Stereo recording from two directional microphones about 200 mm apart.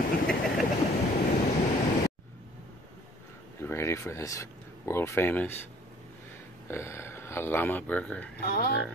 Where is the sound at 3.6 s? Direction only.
10° left (ahead or behind).